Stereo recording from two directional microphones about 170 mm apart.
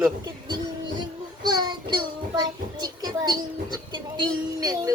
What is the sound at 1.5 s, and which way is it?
Child singing, 25° right (ahead or behind).